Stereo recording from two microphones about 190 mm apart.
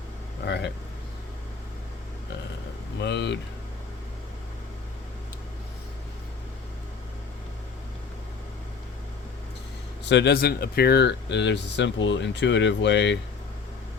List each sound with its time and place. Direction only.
0.4 s speech: 60° left (ahead or behind)
3.0 s speech: 65° left (ahead or behind)
10.1 s speech: 65° left (ahead or behind)